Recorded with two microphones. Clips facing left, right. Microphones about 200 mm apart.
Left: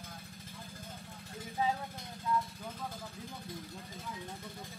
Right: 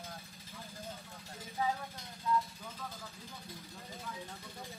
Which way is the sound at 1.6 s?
20° left (ahead or behind).